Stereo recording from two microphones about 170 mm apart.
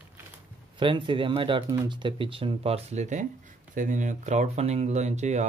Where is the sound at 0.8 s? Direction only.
30° right (ahead or behind).